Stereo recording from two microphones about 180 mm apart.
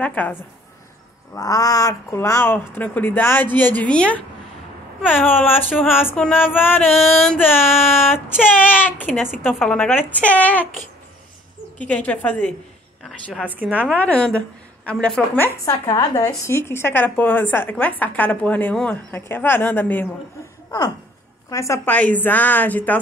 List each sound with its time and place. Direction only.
0.0 s speech: 10° left (ahead or behind)
6.9 s music: centre (ahead or behind)
8.4 s speech: 10° left (ahead or behind)
11.8 s speech: 5° left (ahead or behind)
13.3 s a woman's voice: 5° right (ahead or behind)
13.8 s speech: 10° left (ahead or behind)
21.5 s speech: 15° left (ahead or behind)